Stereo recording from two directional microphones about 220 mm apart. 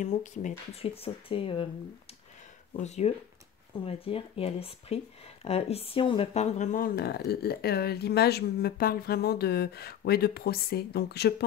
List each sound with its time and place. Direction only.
0.0 s speech: 35° left (ahead or behind)
2.7 s speech: 30° left (ahead or behind); by 11.4 s 45° left (ahead or behind)